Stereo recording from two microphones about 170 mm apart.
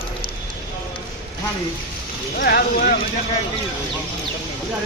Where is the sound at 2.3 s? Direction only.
60° left (ahead or behind).